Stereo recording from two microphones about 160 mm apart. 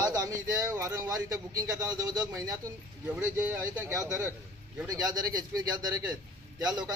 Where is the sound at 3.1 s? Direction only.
10° right (ahead or behind).